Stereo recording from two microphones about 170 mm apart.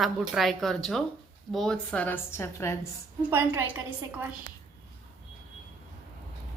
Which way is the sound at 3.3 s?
10° right (ahead or behind).